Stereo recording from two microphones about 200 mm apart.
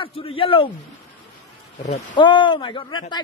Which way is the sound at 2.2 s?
25° left (ahead or behind).